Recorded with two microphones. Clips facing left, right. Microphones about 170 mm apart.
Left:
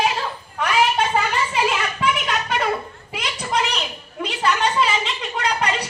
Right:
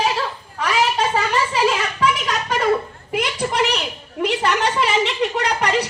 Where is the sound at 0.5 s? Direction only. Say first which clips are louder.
Even; 35° right (ahead or behind).